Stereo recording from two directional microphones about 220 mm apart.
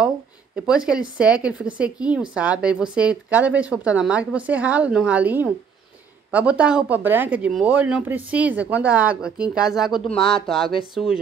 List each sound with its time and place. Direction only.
0.6 s speech: 5° right (ahead or behind)
10.1 s speech: 25° left (ahead or behind)
10.4 s speech: centre (ahead or behind)